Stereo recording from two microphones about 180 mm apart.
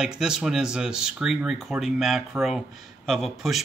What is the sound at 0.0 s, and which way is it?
Speech, 5° right (ahead or behind).